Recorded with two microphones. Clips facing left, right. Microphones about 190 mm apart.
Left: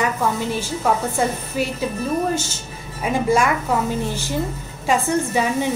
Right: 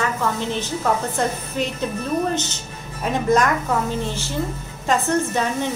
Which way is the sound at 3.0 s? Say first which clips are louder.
Even; 10° left (ahead or behind).